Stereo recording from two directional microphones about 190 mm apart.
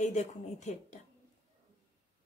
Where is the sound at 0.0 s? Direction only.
40° left (ahead or behind).